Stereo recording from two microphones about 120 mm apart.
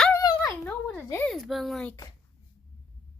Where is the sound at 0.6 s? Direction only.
15° left (ahead or behind).